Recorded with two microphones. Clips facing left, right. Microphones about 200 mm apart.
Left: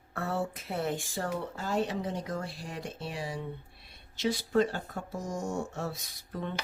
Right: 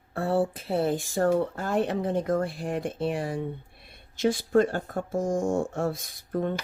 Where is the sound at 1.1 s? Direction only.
50° right (ahead or behind).